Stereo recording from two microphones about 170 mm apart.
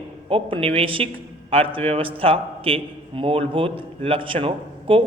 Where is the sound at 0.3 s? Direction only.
35° right (ahead or behind).